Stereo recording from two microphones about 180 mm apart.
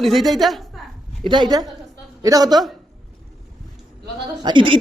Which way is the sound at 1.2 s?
25° right (ahead or behind).